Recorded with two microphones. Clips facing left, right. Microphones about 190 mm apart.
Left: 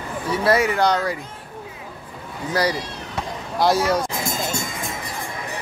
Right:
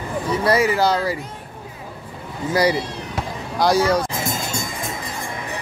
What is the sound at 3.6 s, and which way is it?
Speech, centre (ahead or behind).